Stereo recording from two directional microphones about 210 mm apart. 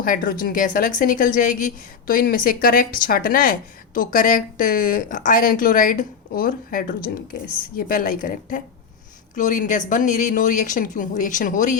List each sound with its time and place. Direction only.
0.0 s a woman's voice: 40° left (ahead or behind)